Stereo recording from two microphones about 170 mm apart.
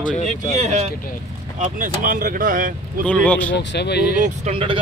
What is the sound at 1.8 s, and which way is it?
Speech, 55° right (ahead or behind).